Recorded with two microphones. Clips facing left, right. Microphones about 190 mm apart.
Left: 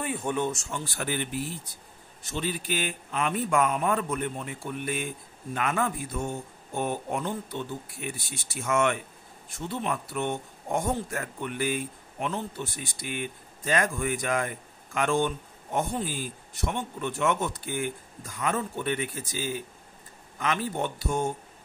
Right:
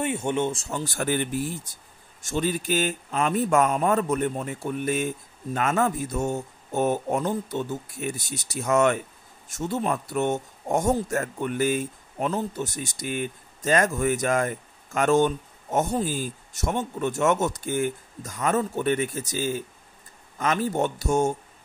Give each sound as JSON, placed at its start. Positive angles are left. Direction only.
{"t": 0.0, "sound": "speech", "side_deg": -25}